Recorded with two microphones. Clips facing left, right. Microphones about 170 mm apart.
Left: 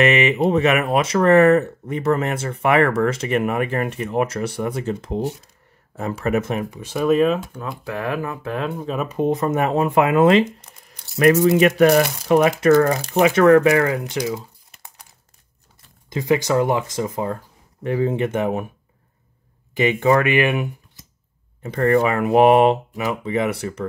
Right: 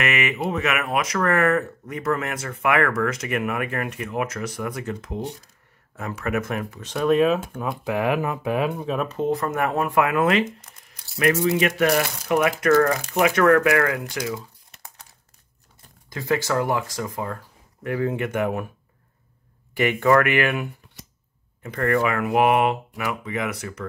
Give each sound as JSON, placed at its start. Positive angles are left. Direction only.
{"t": 0.0, "sound": "speech", "side_deg": 30}
{"t": 7.5, "sound": "speech", "side_deg": -15}
{"t": 9.2, "sound": "speech", "side_deg": 20}
{"t": 11.1, "sound": "speech", "side_deg": 40}
{"t": 12.3, "sound": "speech", "side_deg": 30}
{"t": 16.1, "sound": "speech", "side_deg": 20}
{"t": 19.7, "sound": "speech", "side_deg": 20}
{"t": 21.0, "sound": "a sound", "side_deg": -70}
{"t": 21.6, "sound": "speech", "side_deg": 30}